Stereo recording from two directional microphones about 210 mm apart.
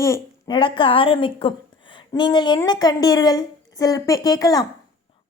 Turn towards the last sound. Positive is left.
turn(degrees=20)  # may be behind; listen again after turning